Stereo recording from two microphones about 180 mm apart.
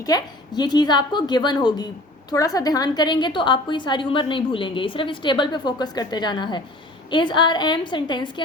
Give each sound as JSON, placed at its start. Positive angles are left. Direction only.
{"t": 0.0, "sound": "a woman's voice", "side_deg": 20}